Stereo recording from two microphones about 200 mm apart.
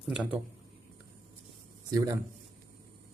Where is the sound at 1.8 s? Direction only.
20° right (ahead or behind).